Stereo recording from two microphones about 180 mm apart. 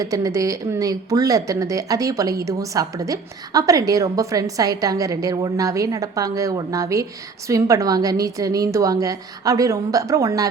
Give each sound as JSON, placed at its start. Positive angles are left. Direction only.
{"t": 0.0, "sound": "a woman's voice", "side_deg": -20}